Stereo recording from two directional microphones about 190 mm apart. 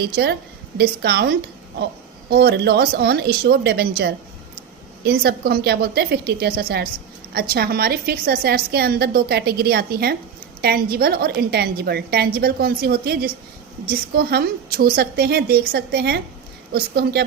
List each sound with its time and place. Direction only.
0.0 s a woman's voice: 60° right (ahead or behind)